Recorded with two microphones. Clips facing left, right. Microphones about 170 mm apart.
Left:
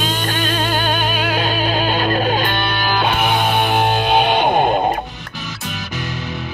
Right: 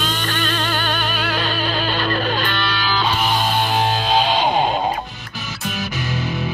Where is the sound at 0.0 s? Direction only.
45° left (ahead or behind).